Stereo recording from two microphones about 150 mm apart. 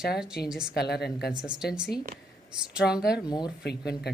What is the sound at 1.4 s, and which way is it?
Speech, 5° right (ahead or behind).